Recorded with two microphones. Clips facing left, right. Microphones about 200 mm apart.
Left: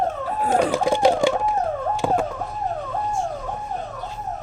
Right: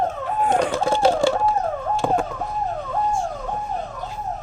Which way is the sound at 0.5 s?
10° left (ahead or behind).